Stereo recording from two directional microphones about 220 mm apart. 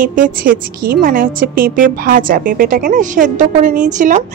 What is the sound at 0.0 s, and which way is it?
A woman's voice, 35° right (ahead or behind).